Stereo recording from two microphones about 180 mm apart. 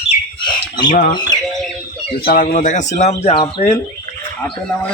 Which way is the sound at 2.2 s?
50° left (ahead or behind).